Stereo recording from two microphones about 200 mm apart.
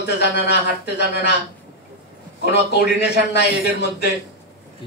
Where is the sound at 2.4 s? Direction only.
60° left (ahead or behind).